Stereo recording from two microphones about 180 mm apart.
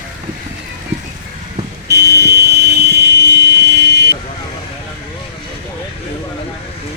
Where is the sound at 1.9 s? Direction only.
65° right (ahead or behind).